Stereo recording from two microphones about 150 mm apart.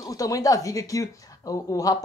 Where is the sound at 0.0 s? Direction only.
25° left (ahead or behind).